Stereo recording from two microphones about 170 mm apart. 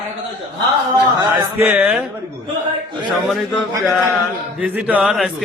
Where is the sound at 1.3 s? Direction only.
10° right (ahead or behind).